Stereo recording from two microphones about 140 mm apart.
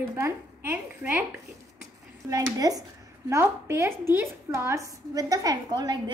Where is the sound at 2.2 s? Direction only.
25° right (ahead or behind).